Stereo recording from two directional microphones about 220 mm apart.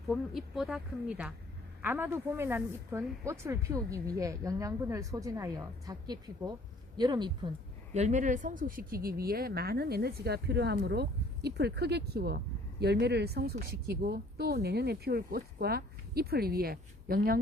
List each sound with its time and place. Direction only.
0.1 s speech: centre (ahead or behind); by 7.3 s 20° right (ahead or behind)
7.9 s speech: 30° right (ahead or behind)